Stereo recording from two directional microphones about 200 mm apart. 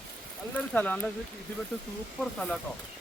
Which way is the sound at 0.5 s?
5° left (ahead or behind).